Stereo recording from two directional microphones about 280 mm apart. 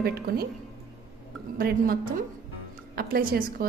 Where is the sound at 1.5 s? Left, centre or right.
Right.